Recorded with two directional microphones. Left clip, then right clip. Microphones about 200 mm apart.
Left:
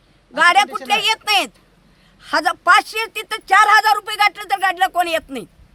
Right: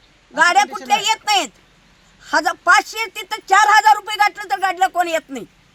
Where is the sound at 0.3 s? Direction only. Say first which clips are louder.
Left 1 dB; 15° left (ahead or behind).